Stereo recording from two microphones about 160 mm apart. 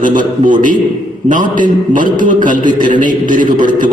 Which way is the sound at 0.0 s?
55° right (ahead or behind).